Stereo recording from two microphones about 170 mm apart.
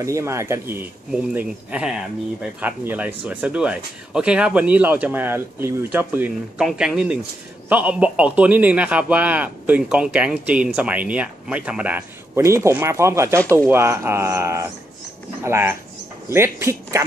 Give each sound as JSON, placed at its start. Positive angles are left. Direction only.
{"t": 0.0, "sound": "speech", "side_deg": -15}
{"t": 13.4, "sound": "speech", "side_deg": 10}
{"t": 13.7, "sound": "speech", "side_deg": -15}